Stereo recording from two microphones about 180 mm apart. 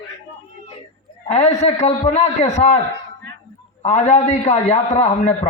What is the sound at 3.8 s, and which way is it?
A man's voice, 40° left (ahead or behind).